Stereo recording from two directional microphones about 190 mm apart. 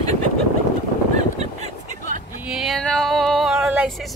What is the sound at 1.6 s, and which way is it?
Vehicle, 40° right (ahead or behind).